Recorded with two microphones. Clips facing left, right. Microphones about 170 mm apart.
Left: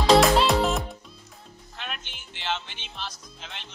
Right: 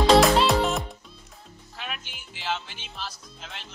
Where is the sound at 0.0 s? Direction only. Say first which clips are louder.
Even; centre (ahead or behind).